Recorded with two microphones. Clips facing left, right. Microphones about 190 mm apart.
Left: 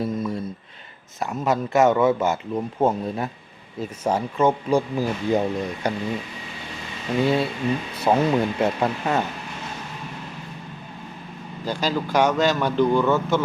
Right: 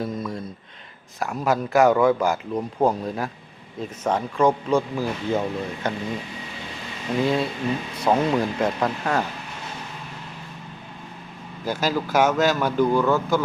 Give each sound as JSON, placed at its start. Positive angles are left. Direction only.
{"t": 0.0, "sound": "a sound", "side_deg": 5}
{"t": 1.2, "sound": "a man's voice", "side_deg": 0}
{"t": 4.9, "sound": "speech", "side_deg": 15}
{"t": 7.2, "sound": "a man's voice", "side_deg": 0}
{"t": 11.6, "sound": "a man's voice", "side_deg": -5}